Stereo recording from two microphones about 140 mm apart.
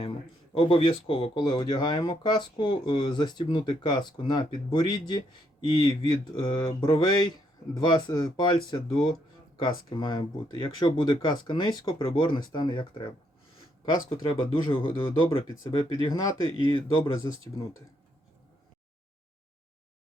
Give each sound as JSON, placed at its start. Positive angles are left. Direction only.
{"t": 0.5, "sound": "speech", "side_deg": 40}
{"t": 14.3, "sound": "speech", "side_deg": 40}
{"t": 15.7, "sound": "speech", "side_deg": 30}